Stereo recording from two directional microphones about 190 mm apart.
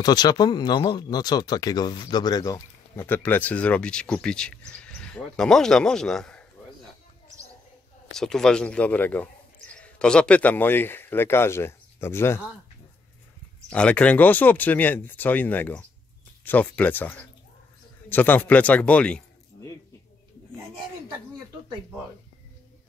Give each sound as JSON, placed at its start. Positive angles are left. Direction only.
{"t": 0.0, "sound": "speech", "side_deg": 20}
{"t": 8.1, "sound": "speech", "side_deg": 5}
{"t": 13.7, "sound": "speech", "side_deg": 5}